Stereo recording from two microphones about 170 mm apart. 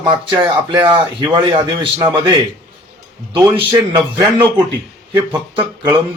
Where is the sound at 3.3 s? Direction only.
30° right (ahead or behind).